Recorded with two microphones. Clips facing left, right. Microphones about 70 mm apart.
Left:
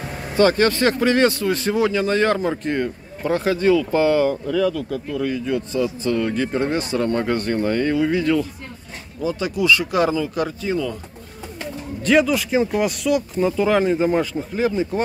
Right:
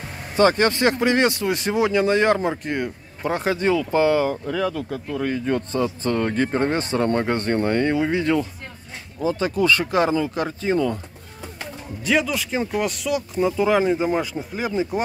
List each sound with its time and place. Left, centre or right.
0.4 s speech: right
2.3 s speech: centre
3.3 s speech: right
12.0 s speech: centre